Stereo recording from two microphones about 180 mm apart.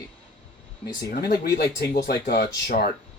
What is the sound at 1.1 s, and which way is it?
Speech, 60° left (ahead or behind).